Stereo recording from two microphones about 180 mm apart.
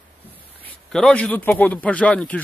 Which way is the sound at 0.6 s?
5° left (ahead or behind).